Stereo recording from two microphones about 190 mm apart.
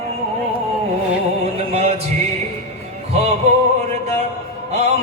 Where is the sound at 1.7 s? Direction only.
35° right (ahead or behind).